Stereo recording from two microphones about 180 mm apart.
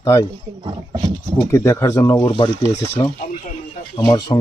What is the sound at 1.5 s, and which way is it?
Speech, 15° left (ahead or behind).